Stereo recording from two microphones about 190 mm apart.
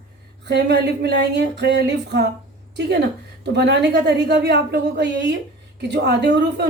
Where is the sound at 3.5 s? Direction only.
60° right (ahead or behind).